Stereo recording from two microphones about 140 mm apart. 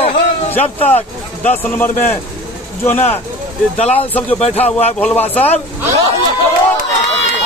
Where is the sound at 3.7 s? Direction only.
50° left (ahead or behind).